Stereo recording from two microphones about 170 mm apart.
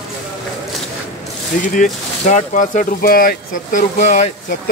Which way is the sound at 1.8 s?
50° left (ahead or behind).